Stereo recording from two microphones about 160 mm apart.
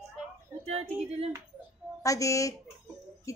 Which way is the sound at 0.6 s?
40° right (ahead or behind).